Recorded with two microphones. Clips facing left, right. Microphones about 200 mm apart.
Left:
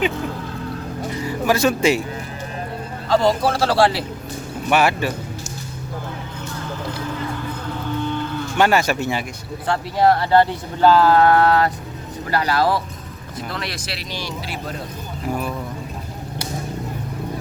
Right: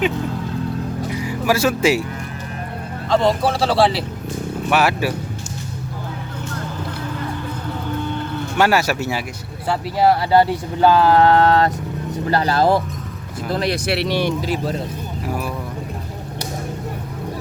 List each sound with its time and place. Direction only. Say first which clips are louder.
1.2 s speech: left 1 dB; 10° right (ahead or behind)
3.1 s speech: even; centre (ahead or behind)
8.5 s speech: even; 5° right (ahead or behind); by 12.7 s 25° right (ahead or behind)
13.7 s speech: right 11 dB; 60° right (ahead or behind)
15.3 s speech: left 1 dB; 5° right (ahead or behind)